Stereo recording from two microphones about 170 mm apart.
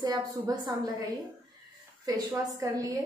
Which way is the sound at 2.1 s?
20° right (ahead or behind).